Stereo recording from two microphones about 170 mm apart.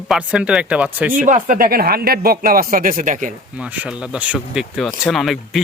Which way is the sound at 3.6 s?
5° right (ahead or behind).